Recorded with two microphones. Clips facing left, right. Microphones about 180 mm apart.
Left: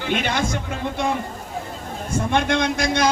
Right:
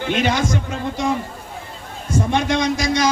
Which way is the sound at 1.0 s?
55° left (ahead or behind).